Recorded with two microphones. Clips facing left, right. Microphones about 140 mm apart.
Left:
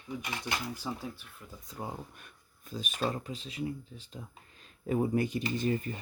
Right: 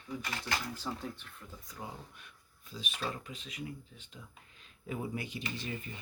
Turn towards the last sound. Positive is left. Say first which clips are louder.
# left 10 dB
turn(degrees=45)  # may be behind; listen again after turning